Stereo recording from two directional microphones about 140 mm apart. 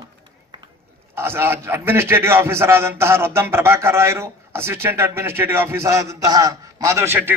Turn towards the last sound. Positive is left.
turn(degrees=-15)  # may be behind; listen again after turning